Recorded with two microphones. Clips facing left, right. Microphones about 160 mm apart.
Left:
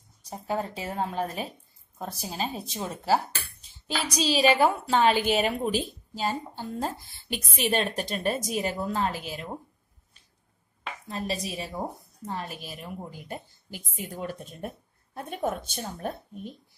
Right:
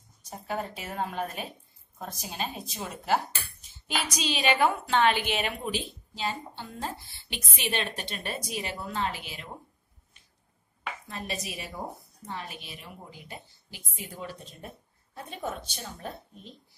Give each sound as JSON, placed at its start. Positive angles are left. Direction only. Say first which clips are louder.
{"t": 0.2, "sound": "speech", "louder": "left 3 dB", "side_deg": 30}
{"t": 11.1, "sound": "speech", "louder": "left 7 dB", "side_deg": 35}
{"t": 12.3, "sound": "speech", "louder": "left 4 dB", "side_deg": 45}